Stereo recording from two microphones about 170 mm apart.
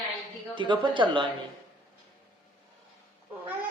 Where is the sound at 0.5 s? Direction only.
30° right (ahead or behind).